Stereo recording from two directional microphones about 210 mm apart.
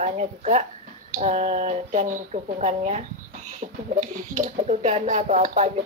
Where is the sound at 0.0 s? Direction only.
35° right (ahead or behind).